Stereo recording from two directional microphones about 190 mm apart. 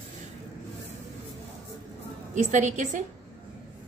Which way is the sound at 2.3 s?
40° right (ahead or behind).